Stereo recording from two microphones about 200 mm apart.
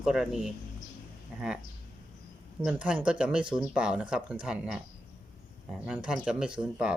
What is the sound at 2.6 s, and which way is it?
Speech, 5° right (ahead or behind).